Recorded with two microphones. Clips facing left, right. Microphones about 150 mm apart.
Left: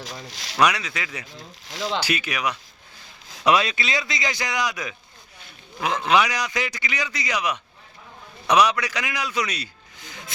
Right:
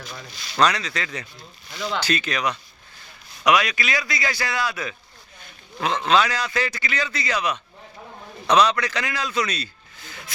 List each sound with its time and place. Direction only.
0.0 s speech: 90° left
0.6 s a man's voice: 10° left (ahead or behind)
1.3 s speech: 90° left
1.9 s a man's voice: 10° left (ahead or behind)
3.4 s a man's voice: 30° left (ahead or behind)